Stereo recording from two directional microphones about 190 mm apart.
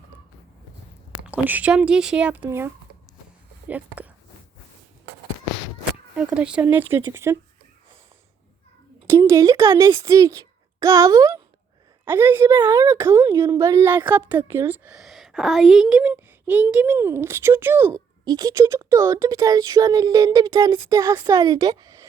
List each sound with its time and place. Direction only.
1.2 s a woman's voice: 10° right (ahead or behind)
6.1 s a woman's voice: 5° right (ahead or behind)
9.0 s a woman's voice: 15° right (ahead or behind)